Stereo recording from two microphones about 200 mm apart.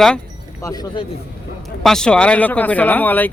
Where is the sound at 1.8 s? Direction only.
5° left (ahead or behind).